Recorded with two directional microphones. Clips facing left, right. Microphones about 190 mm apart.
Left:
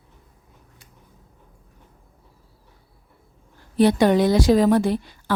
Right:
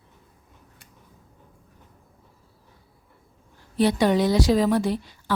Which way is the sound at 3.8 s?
50° left (ahead or behind).